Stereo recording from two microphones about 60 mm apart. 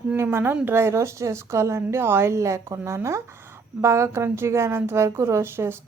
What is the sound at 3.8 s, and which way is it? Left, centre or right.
A woman's voice, right.